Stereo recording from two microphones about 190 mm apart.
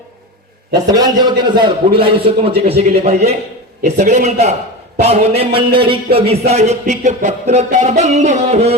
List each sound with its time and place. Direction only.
0.9 s a man's voice: 20° right (ahead or behind)
2.6 s music: 30° right (ahead or behind)
5.5 s a man's voice: 25° right (ahead or behind)
6.1 s music: 30° right (ahead or behind)